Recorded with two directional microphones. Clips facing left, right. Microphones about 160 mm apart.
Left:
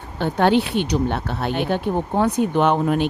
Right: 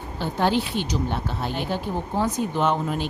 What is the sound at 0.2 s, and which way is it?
Speech, 65° left (ahead or behind).